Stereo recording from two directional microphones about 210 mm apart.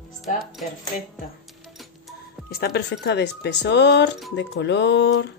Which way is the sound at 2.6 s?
50° left (ahead or behind).